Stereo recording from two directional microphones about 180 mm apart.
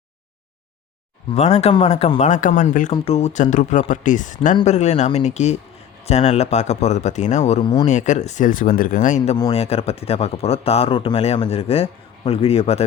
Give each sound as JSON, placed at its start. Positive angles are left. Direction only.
{"t": 1.3, "sound": "speech", "side_deg": 35}
{"t": 2.9, "sound": "speech", "side_deg": 30}
{"t": 7.9, "sound": "speech", "side_deg": 40}